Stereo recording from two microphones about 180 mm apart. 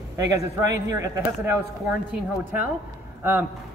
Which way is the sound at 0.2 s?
20° right (ahead or behind).